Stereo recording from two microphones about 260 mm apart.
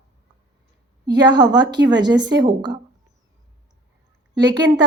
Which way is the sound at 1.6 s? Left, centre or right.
Right.